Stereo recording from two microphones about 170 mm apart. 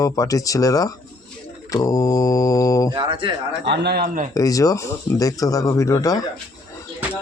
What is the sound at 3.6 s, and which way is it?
Speech, 85° right.